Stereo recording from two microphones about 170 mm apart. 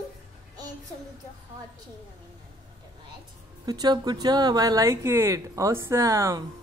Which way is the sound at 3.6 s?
25° right (ahead or behind).